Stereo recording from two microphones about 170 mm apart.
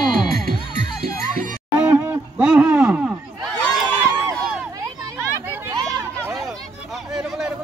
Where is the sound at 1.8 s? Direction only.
15° right (ahead or behind).